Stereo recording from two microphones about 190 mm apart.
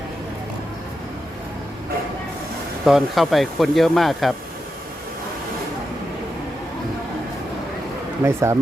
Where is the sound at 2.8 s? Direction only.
Centre (ahead or behind).